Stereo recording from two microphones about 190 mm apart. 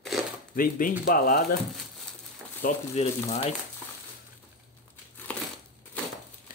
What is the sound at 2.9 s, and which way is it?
Speech, 35° left (ahead or behind).